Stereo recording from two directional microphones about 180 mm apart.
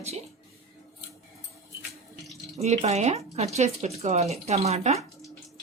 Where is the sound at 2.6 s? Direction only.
40° right (ahead or behind).